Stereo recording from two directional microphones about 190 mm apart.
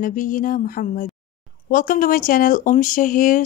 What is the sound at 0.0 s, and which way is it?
Speech, 45° left (ahead or behind).